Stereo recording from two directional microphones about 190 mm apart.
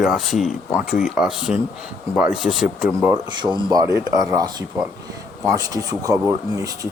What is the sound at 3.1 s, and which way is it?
Speech, 25° right (ahead or behind).